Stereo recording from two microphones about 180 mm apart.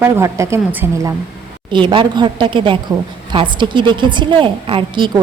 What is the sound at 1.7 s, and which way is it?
A woman's voice, 25° right (ahead or behind).